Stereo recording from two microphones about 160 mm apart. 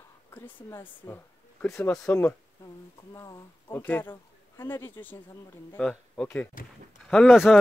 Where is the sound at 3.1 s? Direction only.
20° left (ahead or behind); by 7.6 s centre (ahead or behind).